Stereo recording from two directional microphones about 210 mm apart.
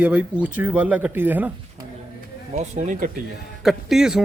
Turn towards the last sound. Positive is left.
turn(degrees=0)  # may be behind; listen again after turning